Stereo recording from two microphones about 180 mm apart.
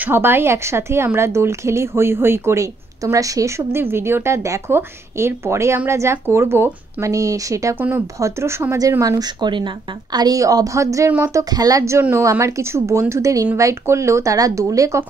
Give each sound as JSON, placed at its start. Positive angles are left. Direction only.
{"t": 0.0, "sound": "speech", "side_deg": -10}